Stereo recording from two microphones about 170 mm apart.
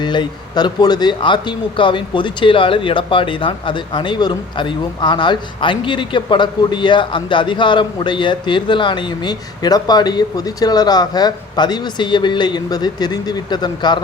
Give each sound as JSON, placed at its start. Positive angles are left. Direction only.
{"t": 0.0, "sound": "speech", "side_deg": 25}